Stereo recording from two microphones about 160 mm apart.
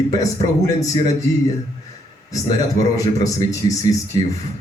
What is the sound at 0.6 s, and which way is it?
Speech, 20° left (ahead or behind).